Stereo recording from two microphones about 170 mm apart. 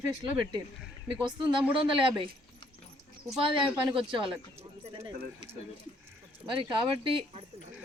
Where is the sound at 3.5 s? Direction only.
30° right (ahead or behind).